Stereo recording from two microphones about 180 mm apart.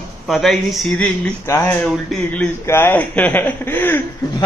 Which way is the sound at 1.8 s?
Centre (ahead or behind).